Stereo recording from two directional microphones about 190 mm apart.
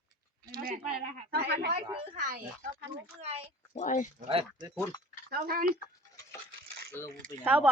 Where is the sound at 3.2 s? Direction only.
30° right (ahead or behind).